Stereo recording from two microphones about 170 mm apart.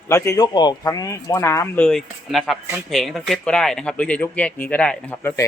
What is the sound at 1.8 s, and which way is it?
Speech, centre (ahead or behind).